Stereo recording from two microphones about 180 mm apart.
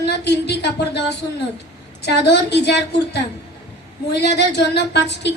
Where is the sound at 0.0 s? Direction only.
70° left (ahead or behind).